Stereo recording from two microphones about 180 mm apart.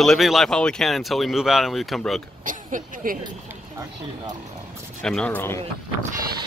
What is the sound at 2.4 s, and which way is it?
Speech, 50° right (ahead or behind).